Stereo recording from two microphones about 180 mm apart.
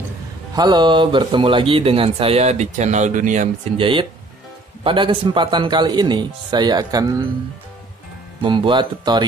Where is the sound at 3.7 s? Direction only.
30° right (ahead or behind).